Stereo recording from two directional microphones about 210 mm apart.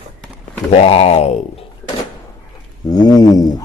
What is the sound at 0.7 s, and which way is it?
Speech, 30° left (ahead or behind).